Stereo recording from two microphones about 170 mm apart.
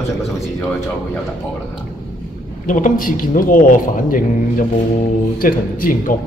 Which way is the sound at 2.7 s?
50° left (ahead or behind).